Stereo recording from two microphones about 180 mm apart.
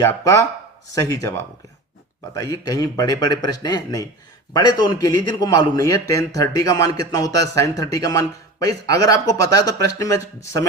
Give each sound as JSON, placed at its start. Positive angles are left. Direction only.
{"t": 0.0, "sound": "a man's voice", "side_deg": 15}